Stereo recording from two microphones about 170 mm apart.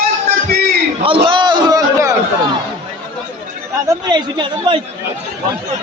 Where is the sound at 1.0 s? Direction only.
30° right (ahead or behind).